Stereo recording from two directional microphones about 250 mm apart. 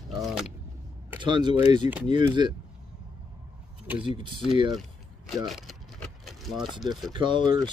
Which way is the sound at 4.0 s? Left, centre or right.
Centre.